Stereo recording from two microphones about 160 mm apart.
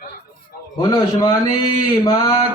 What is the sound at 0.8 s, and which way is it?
A man's voice, 25° left (ahead or behind).